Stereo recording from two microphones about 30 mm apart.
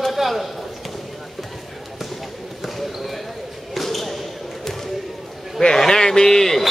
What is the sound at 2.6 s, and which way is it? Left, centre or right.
Basketball bounce, centre.